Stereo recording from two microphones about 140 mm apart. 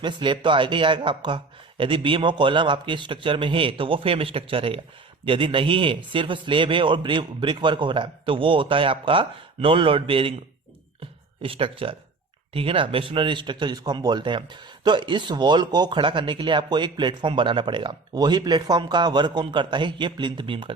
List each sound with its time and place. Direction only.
0.0 s speech: 35° right (ahead or behind)
11.4 s speech: 40° right (ahead or behind)